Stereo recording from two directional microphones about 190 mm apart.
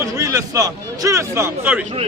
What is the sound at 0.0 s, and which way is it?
A man's voice, 15° right (ahead or behind).